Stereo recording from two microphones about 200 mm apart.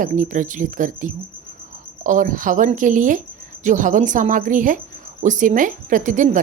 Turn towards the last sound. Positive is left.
turn(degrees=-40)  # may be behind; listen again after turning